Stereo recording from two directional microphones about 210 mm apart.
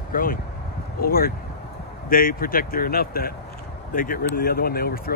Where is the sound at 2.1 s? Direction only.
45° left (ahead or behind).